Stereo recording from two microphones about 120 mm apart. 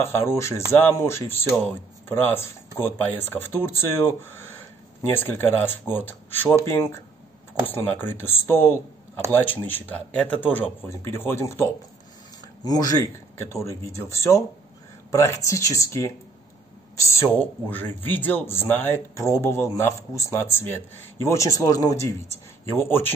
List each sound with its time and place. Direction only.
0.0 s speech: 20° left (ahead or behind)
12.6 s speech: 30° left (ahead or behind)